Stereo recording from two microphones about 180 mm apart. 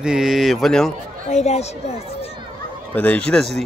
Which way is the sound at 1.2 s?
40° left (ahead or behind).